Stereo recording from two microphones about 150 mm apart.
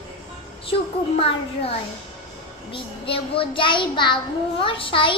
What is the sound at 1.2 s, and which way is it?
A child's voice, 40° left (ahead or behind).